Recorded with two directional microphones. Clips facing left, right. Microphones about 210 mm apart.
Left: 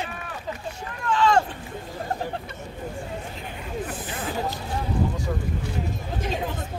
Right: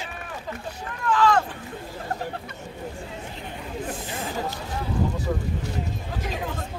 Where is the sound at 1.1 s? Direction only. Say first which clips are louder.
Even; 25° left (ahead or behind).